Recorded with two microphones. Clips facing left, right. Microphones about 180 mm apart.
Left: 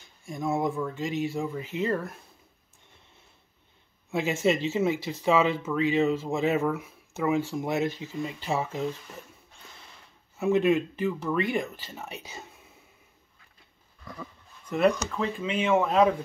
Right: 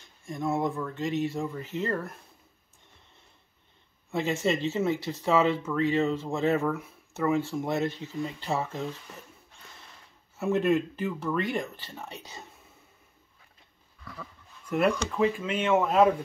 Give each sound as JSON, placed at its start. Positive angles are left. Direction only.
{"t": 0.2, "sound": "speech", "side_deg": 0}
{"t": 4.1, "sound": "speech", "side_deg": 0}
{"t": 10.4, "sound": "speech", "side_deg": 0}
{"t": 14.7, "sound": "speech", "side_deg": -5}